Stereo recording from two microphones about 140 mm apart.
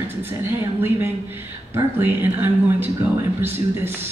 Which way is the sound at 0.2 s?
15° right (ahead or behind).